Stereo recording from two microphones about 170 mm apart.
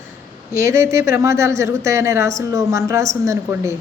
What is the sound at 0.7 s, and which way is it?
A woman's voice, 15° right (ahead or behind).